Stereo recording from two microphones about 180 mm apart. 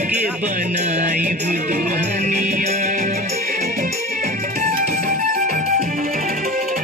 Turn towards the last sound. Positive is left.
turn(degrees=-55)  # may be behind; listen again after turning